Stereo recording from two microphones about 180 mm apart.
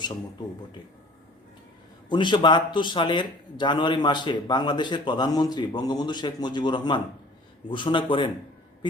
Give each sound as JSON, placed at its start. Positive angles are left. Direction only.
{"t": 2.0, "sound": "speech", "side_deg": 25}